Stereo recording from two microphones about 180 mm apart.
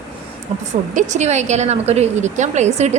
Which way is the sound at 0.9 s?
40° right (ahead or behind).